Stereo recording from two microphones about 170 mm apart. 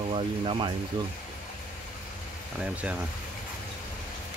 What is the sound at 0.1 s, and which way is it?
Speech, 30° right (ahead or behind).